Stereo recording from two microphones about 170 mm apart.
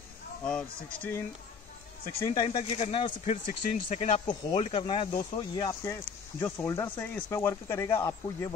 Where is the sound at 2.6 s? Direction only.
40° left (ahead or behind).